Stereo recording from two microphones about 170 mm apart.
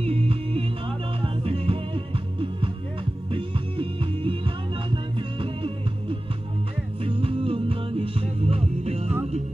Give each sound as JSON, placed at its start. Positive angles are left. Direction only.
{"t": 0.0, "sound": "music", "side_deg": -35}